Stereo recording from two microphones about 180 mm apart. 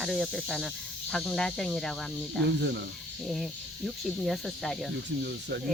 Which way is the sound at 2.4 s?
70° right (ahead or behind).